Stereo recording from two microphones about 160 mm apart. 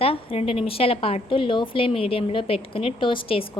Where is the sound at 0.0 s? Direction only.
35° left (ahead or behind).